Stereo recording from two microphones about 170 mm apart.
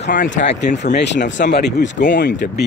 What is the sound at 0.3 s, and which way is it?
Speech, 90° left.